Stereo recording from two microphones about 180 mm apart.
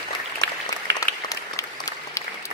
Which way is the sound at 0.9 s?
70° right (ahead or behind).